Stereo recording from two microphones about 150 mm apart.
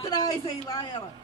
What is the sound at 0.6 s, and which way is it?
Speech, 25° left (ahead or behind).